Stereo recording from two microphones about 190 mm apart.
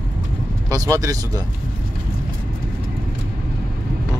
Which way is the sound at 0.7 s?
15° right (ahead or behind).